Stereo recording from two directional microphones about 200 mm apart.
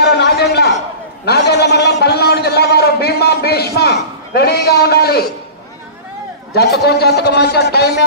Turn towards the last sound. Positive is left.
turn(degrees=55)  # may be behind; listen again after turning